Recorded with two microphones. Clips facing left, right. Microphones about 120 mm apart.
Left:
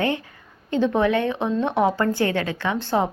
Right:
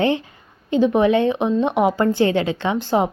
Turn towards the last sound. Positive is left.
turn(degrees=-15)  # may be behind; listen again after turning